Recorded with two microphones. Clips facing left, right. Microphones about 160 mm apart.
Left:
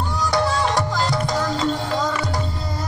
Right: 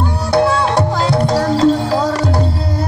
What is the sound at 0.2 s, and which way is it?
Music, 60° right (ahead or behind).